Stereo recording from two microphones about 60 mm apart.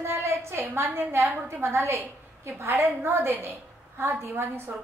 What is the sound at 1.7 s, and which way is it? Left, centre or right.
A woman's voice, right.